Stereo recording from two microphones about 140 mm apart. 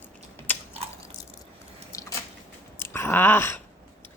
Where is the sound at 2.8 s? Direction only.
15° left (ahead or behind).